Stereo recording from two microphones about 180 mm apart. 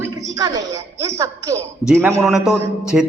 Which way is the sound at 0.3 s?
20° right (ahead or behind).